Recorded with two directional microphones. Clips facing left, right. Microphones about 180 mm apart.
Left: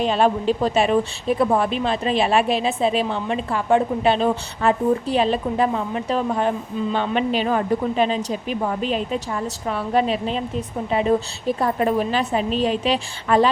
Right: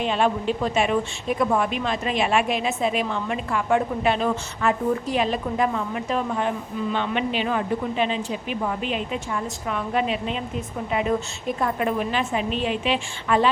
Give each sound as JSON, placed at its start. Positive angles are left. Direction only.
{"t": 0.0, "sound": "a woman's voice", "side_deg": 35}